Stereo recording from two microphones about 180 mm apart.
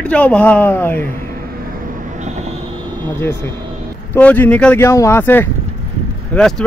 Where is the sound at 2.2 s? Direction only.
40° right (ahead or behind).